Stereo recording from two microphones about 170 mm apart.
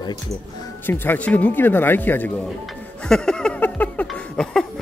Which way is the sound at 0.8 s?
10° left (ahead or behind).